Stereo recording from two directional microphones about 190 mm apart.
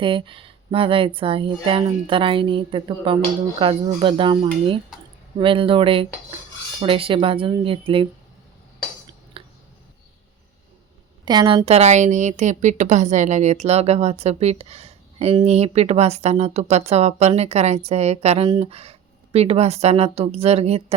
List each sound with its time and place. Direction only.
0.0 s speech: 25° right (ahead or behind)
9.4 s a sound: 30° right (ahead or behind)
11.3 s a woman's voice: 25° right (ahead or behind)